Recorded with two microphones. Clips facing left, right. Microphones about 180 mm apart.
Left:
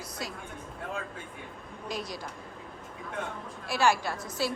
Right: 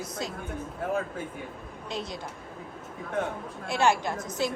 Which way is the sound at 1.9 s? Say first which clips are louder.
Right 1 dB; 25° right (ahead or behind).